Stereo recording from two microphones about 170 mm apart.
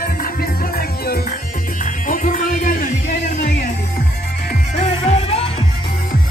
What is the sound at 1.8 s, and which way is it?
Music, 50° left (ahead or behind).